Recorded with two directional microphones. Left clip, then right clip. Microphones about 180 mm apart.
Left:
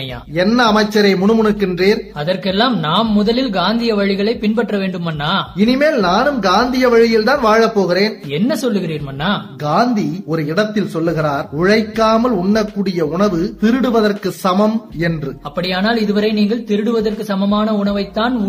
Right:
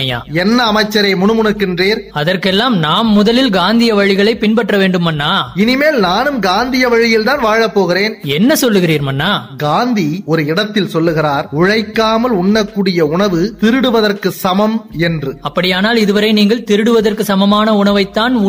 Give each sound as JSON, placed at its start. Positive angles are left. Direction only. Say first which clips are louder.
{"t": 0.4, "sound": "a man's voice", "louder": "right 1 dB", "side_deg": -35}
{"t": 2.2, "sound": "a man's voice", "louder": "right 3 dB", "side_deg": -50}
{"t": 8.4, "sound": "speech", "louder": "right 7 dB", "side_deg": -55}
{"t": 9.7, "sound": "a man's voice", "louder": "right 1 dB", "side_deg": -40}
{"t": 15.5, "sound": "a man's voice", "louder": "right 4 dB", "side_deg": -50}